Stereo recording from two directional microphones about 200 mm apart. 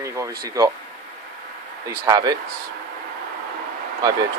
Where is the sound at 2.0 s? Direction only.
20° right (ahead or behind).